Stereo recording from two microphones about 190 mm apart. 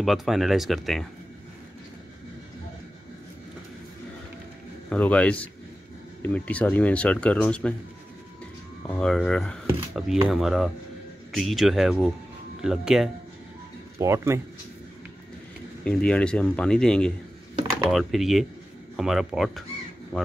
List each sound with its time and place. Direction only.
0.0 s speech: centre (ahead or behind)
4.8 s speech: 5° left (ahead or behind)
8.8 s speech: 5° left (ahead or behind)
13.9 s speech: 15° right (ahead or behind)
15.8 s speech: 5° left (ahead or behind)